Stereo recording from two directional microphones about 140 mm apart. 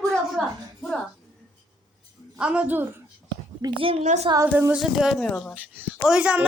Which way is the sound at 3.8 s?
40° right (ahead or behind).